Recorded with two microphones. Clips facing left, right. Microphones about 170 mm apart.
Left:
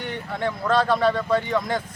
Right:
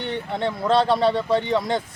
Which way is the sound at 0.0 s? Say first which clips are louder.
Right 2 dB; 25° right (ahead or behind).